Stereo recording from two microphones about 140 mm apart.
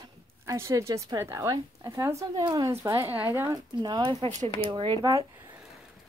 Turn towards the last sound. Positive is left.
turn(degrees=-35)  # may be behind; listen again after turning